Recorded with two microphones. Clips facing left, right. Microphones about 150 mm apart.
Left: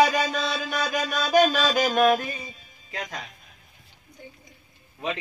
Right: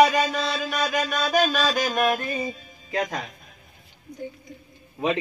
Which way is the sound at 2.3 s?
75° right (ahead or behind).